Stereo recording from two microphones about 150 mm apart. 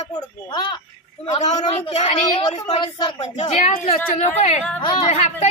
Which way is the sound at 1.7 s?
50° left (ahead or behind).